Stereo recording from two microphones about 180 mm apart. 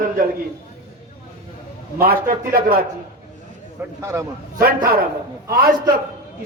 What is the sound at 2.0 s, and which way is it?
Speech, 55° right (ahead or behind).